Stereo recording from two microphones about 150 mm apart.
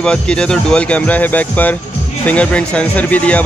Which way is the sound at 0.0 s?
5° left (ahead or behind).